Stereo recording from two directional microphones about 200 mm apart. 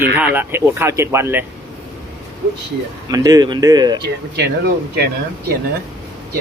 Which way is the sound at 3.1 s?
20° right (ahead or behind).